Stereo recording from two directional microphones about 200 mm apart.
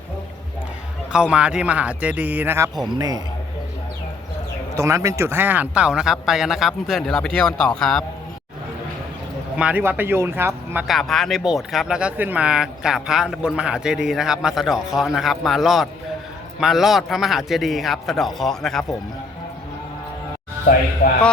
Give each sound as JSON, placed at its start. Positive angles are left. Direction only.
{"t": 1.1, "sound": "speech", "side_deg": -5}
{"t": 2.9, "sound": "a man's voice", "side_deg": -20}
{"t": 4.7, "sound": "speech", "side_deg": -15}
{"t": 9.6, "sound": "speech", "side_deg": -5}
{"t": 10.8, "sound": "speech", "side_deg": 0}